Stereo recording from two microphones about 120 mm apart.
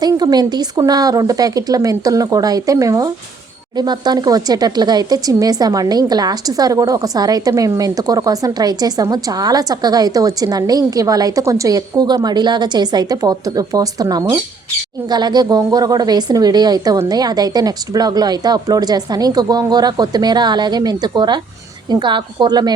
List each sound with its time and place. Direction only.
0.0 s speech: 35° right (ahead or behind)